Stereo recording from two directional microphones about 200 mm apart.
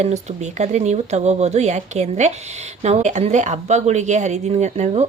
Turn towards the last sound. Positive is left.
turn(degrees=-35)  # may be behind; listen again after turning